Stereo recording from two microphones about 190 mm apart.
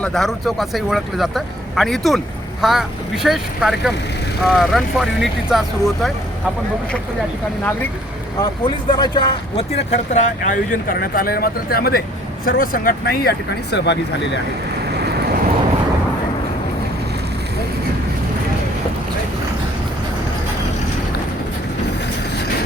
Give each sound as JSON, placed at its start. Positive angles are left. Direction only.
{"t": 0.0, "sound": "speech", "side_deg": 0}
{"t": 8.4, "sound": "speech", "side_deg": 20}